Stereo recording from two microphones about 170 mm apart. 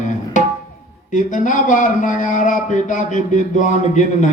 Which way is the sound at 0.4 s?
45° left (ahead or behind).